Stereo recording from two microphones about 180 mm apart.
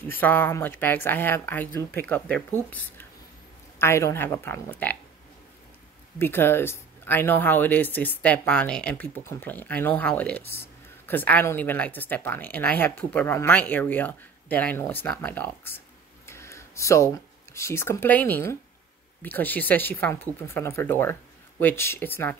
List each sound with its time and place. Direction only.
0.0 s speech: 10° left (ahead or behind)
3.8 s speech: 15° left (ahead or behind)
6.1 s speech: 10° left (ahead or behind)
16.3 s a sound: 15° left (ahead or behind)
17.6 s speech: 15° left (ahead or behind)